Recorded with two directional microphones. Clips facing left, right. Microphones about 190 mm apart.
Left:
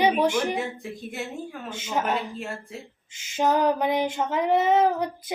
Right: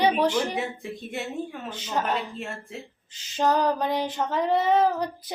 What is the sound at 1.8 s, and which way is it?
Child singing, 10° left (ahead or behind).